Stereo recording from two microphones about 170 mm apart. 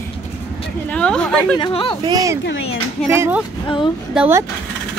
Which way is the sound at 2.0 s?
20° right (ahead or behind).